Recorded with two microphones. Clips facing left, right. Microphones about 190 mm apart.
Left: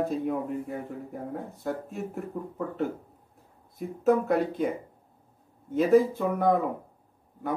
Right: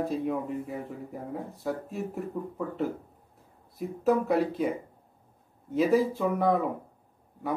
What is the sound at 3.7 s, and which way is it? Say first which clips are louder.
Speech: left 2 dB; centre (ahead or behind).